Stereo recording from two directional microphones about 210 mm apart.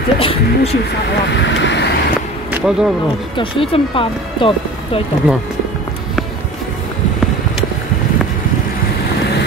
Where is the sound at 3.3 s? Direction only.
25° left (ahead or behind).